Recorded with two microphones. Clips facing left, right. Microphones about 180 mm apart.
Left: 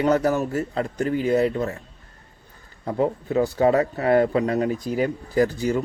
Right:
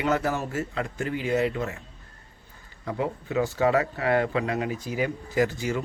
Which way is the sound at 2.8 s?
40° left (ahead or behind).